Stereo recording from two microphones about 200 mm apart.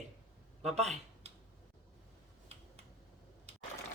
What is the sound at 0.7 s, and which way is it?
Speech, 35° right (ahead or behind).